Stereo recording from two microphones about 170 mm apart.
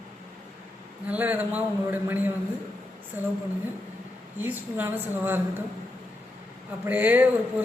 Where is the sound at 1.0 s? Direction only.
10° right (ahead or behind).